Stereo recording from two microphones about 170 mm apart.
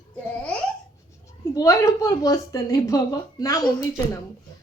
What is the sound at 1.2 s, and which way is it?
A woman's voice, 20° left (ahead or behind).